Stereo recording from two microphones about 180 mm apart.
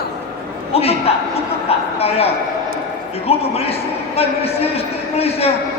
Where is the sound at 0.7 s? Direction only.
35° left (ahead or behind).